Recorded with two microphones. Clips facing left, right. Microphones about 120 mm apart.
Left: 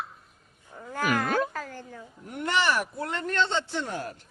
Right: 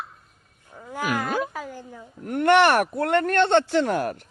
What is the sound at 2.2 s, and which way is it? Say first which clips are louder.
Speech: right 10 dB; 75° right (ahead or behind).